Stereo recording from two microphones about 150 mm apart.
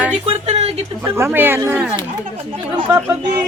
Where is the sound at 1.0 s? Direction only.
15° right (ahead or behind).